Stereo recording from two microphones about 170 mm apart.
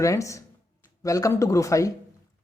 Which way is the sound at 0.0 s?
20° left (ahead or behind).